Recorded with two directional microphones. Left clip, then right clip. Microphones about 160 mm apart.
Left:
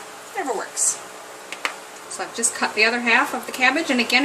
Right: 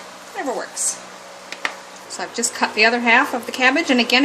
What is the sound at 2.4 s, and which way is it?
Speech, 50° right (ahead or behind).